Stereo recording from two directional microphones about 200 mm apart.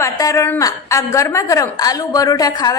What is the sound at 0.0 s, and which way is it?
A woman's voice, 15° left (ahead or behind).